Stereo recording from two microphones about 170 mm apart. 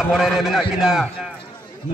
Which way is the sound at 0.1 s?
Centre (ahead or behind).